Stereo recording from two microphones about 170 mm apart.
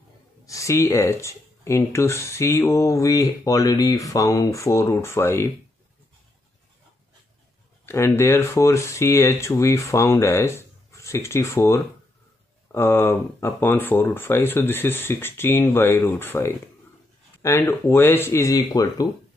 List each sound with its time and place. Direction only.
0.5 s speech: 20° left (ahead or behind)
7.8 s speech: 15° left (ahead or behind)